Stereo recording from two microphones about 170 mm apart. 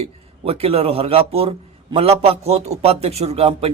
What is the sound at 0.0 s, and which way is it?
Speech, 35° right (ahead or behind).